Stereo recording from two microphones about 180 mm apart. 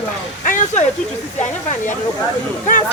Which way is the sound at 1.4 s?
45° left (ahead or behind).